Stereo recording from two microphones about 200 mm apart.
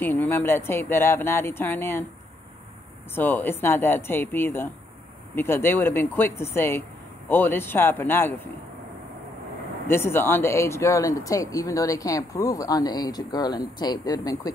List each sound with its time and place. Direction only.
0.0 s speech: 10° left (ahead or behind)
3.2 s speech: 10° left (ahead or behind)
9.8 s speech: 10° left (ahead or behind)